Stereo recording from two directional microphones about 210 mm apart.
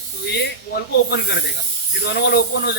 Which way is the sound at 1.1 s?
50° left (ahead or behind).